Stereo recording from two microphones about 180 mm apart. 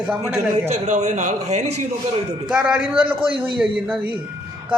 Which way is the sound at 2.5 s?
10° right (ahead or behind).